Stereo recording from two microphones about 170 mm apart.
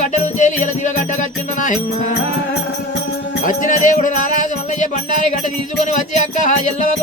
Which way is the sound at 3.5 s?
50° left (ahead or behind).